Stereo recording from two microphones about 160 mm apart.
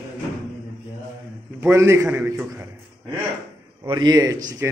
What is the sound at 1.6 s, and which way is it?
Speech, 15° right (ahead or behind).